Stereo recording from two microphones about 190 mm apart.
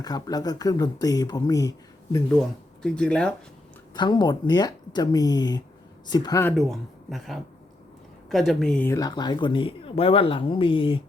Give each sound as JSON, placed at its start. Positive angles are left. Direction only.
{"t": 0.0, "sound": "speech", "side_deg": 20}
{"t": 2.8, "sound": "speech", "side_deg": 5}
{"t": 3.9, "sound": "speech", "side_deg": 25}
{"t": 6.6, "sound": "speech", "side_deg": 0}